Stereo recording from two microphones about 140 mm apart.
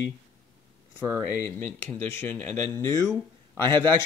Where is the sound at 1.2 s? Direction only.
20° left (ahead or behind).